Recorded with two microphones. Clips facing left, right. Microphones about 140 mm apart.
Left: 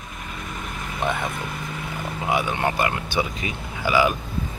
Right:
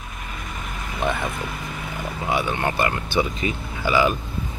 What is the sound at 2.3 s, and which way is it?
Speech, 15° left (ahead or behind).